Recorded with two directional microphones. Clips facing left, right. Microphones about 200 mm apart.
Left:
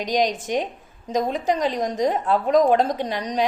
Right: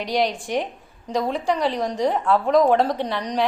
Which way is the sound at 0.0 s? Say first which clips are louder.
Left 1 dB; 20° left (ahead or behind).